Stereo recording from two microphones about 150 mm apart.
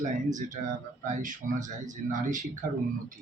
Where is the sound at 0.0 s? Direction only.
55° right (ahead or behind).